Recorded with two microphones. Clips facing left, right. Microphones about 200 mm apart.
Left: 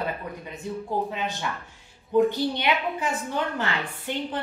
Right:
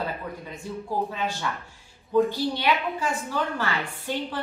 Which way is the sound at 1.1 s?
20° left (ahead or behind).